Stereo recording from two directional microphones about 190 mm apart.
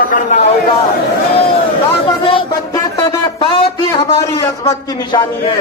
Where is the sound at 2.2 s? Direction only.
25° left (ahead or behind).